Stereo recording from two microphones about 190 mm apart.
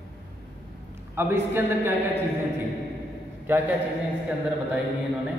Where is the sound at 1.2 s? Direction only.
10° right (ahead or behind).